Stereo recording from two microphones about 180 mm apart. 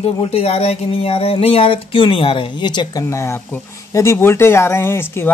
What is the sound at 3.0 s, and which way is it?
Speech, 15° left (ahead or behind).